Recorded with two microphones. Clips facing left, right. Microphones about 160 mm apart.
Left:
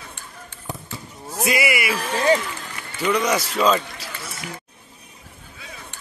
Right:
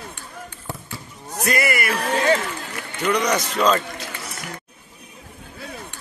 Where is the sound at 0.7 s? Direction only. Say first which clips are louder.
Left 1 dB; 15° left (ahead or behind).